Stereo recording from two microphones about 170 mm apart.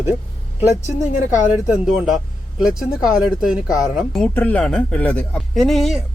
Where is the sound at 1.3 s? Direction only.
5° right (ahead or behind).